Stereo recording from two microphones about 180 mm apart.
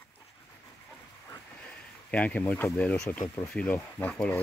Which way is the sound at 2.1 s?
5° left (ahead or behind).